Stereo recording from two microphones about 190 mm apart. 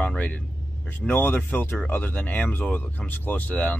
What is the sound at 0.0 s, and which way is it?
Vehicle, 5° left (ahead or behind).